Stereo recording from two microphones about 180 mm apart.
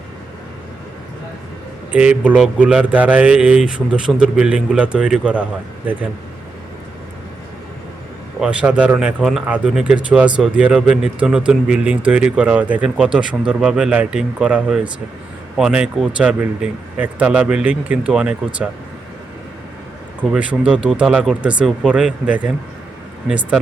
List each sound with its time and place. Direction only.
1.9 s speech: 5° right (ahead or behind)
8.4 s speech: 5° right (ahead or behind)
20.2 s speech: 5° right (ahead or behind)